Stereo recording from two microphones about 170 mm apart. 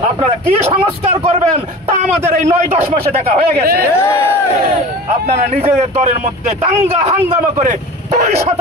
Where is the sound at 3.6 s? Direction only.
65° right (ahead or behind).